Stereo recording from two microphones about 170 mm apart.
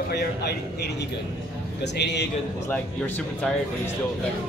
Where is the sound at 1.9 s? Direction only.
85° left.